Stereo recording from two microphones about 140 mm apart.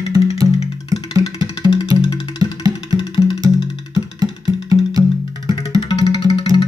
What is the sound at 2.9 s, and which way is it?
Music, 35° left (ahead or behind).